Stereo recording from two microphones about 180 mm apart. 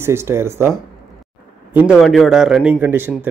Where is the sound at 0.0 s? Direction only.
15° right (ahead or behind).